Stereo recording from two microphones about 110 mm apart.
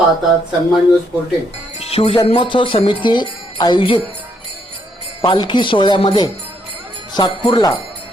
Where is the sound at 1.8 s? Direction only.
65° left (ahead or behind).